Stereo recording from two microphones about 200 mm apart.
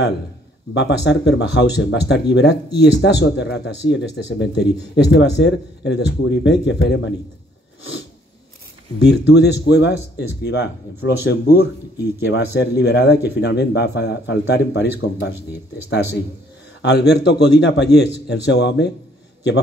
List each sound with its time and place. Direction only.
0.7 s speech: 60° left (ahead or behind)
9.0 s speech: 55° left (ahead or behind)
16.8 s speech: 55° left (ahead or behind)